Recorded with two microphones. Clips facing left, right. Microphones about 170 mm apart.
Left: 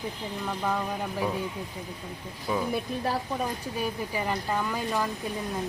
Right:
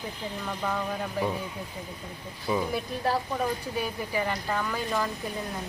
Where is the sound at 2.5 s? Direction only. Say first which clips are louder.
Right 1 dB; centre (ahead or behind).